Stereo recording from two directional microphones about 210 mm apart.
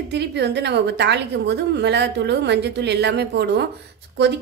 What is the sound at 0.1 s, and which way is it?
A woman's voice, 55° right (ahead or behind).